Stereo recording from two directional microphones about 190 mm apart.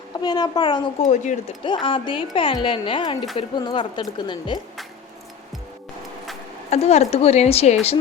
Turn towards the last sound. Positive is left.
turn(degrees=35)  # may be behind; listen again after turning